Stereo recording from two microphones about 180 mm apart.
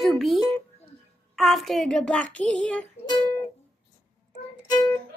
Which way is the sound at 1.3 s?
Centre (ahead or behind).